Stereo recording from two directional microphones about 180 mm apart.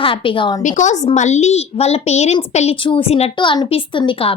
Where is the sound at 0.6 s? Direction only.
45° left (ahead or behind).